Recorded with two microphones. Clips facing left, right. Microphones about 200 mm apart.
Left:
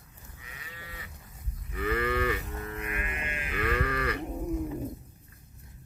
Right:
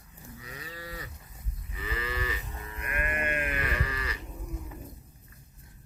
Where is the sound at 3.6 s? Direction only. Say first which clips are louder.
Left 5 dB; 60° left (ahead or behind).